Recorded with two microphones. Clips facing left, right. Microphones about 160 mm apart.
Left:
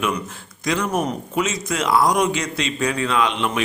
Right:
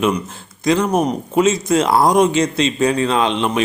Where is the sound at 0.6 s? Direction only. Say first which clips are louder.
Right 6 dB; 25° right (ahead or behind).